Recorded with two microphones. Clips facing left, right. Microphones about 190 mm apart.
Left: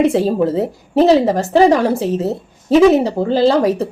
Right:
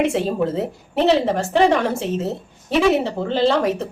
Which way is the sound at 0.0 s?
35° left (ahead or behind).